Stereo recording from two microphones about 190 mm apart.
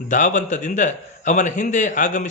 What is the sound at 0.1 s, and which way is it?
A man's voice, 40° left (ahead or behind).